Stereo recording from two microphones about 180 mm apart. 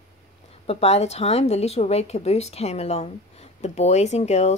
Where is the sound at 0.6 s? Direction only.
35° left (ahead or behind).